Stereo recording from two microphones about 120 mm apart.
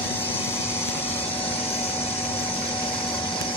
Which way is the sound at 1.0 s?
50° left (ahead or behind).